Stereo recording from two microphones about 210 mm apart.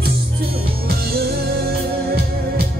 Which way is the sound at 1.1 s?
45° right (ahead or behind).